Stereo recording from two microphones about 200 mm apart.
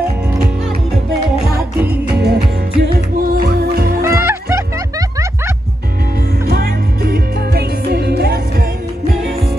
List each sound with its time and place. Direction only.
1.8 s music: 55° right (ahead or behind)
4.0 s music: 15° right (ahead or behind)
6.4 s music: 55° right (ahead or behind)